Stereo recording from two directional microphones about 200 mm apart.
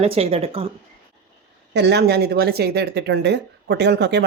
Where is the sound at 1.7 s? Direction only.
55° right (ahead or behind).